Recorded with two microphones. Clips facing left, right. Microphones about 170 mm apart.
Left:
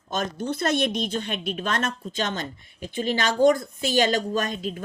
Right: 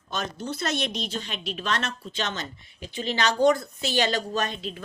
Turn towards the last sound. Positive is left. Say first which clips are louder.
# left 2 dB
turn(degrees=45)  # may be behind; listen again after turning